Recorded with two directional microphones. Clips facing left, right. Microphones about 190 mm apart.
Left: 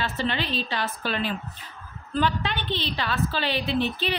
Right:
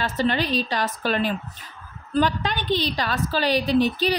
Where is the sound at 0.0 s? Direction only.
45° right (ahead or behind).